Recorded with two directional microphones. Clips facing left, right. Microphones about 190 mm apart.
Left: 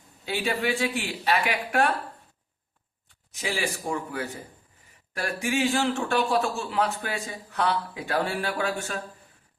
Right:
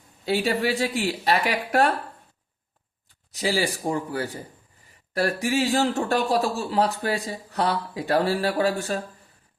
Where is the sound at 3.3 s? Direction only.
35° right (ahead or behind).